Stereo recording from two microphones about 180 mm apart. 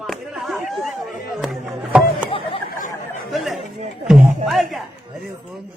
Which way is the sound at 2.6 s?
50° left (ahead or behind).